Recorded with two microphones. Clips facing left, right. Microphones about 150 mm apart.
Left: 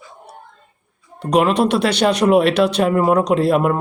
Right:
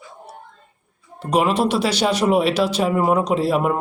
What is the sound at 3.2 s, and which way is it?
Speech, 65° left (ahead or behind).